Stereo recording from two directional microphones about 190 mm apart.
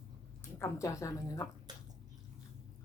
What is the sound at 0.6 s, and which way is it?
Speech, 15° left (ahead or behind).